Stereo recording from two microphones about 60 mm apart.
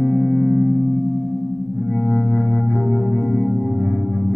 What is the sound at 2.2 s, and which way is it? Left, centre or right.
Organ, left.